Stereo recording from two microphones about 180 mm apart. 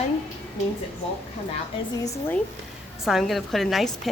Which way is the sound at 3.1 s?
Centre (ahead or behind).